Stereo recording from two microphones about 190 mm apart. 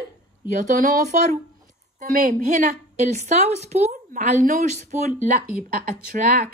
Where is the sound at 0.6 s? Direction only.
45° right (ahead or behind).